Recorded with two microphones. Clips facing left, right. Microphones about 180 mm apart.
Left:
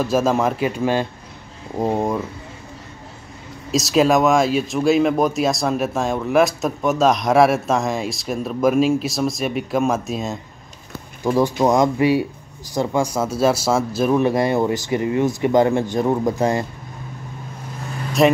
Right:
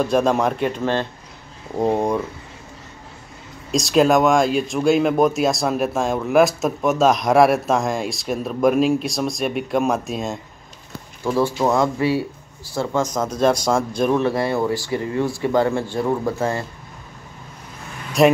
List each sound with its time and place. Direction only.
0.0 s speech: 5° left (ahead or behind)
3.7 s speech: centre (ahead or behind)
11.2 s speech: 15° left (ahead or behind)
14.2 s speech: 15° left (ahead or behind)
18.2 s speech: centre (ahead or behind)